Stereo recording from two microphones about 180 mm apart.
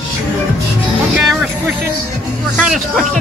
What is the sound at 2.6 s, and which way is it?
Speech, centre (ahead or behind).